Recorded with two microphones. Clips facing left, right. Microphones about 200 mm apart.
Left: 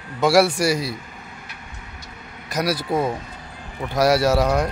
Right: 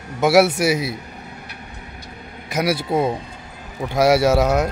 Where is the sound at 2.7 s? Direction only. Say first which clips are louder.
Right 2 dB; 25° right (ahead or behind).